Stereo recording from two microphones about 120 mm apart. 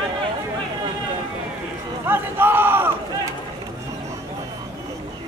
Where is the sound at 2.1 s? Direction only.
15° right (ahead or behind).